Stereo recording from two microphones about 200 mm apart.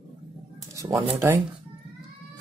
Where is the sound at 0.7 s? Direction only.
15° right (ahead or behind).